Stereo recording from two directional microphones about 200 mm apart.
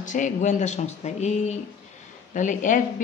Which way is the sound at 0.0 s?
40° left (ahead or behind).